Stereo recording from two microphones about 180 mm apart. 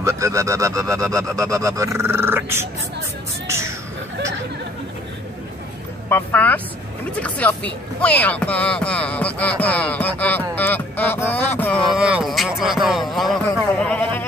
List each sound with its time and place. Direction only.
0.0 s speech: 15° right (ahead or behind)
3.4 s a sound: 15° right (ahead or behind)
6.0 s speech: 10° left (ahead or behind)
11.5 s music: 10° left (ahead or behind)